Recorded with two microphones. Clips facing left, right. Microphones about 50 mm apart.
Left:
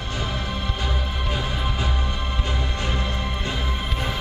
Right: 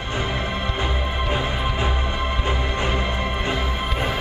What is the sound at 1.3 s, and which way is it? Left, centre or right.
Music, right.